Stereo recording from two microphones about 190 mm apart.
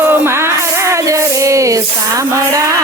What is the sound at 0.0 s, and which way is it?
Music, 10° right (ahead or behind).